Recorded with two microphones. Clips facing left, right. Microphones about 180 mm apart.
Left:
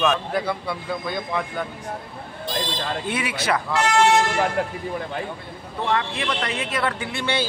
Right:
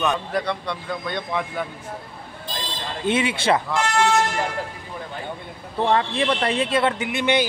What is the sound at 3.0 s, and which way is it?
Speech, 25° right (ahead or behind).